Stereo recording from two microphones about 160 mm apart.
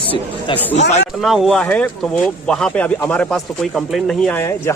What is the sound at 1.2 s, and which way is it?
Speech, centre (ahead or behind).